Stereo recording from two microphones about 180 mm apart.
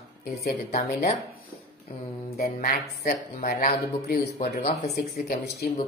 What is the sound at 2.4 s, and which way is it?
Speech, 45° left (ahead or behind).